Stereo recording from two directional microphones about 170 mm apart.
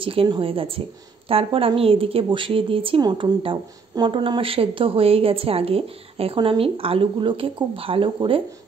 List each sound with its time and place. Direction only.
0.0 s speech: 30° right (ahead or behind)